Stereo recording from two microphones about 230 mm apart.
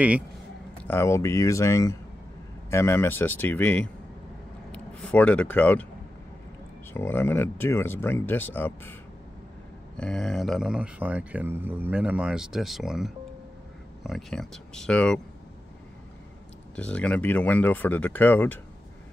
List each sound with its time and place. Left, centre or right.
0.8 s speech: centre
6.9 s speech: centre
9.9 s speech: centre
16.7 s speech: centre